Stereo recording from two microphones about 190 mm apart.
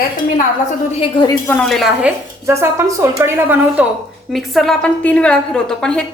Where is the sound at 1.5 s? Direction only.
Centre (ahead or behind).